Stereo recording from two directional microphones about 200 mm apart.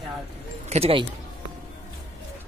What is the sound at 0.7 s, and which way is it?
Speech, 30° right (ahead or behind).